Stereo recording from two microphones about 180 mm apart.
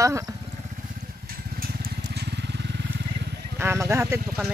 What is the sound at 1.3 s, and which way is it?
Vehicle, 55° right (ahead or behind).